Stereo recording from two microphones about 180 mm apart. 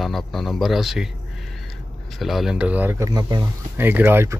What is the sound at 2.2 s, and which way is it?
Speech, centre (ahead or behind).